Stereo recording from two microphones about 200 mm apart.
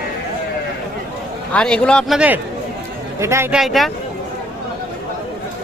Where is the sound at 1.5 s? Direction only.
5° left (ahead or behind).